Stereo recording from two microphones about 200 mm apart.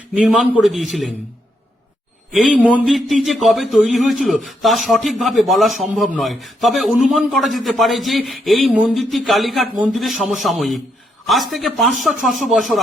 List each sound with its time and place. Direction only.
0.1 s a man's voice: centre (ahead or behind)
2.3 s a man's voice: centre (ahead or behind)